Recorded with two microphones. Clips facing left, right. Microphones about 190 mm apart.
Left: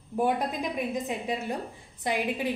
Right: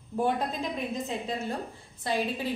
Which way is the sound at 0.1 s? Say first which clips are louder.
Left 1 dB; 15° left (ahead or behind).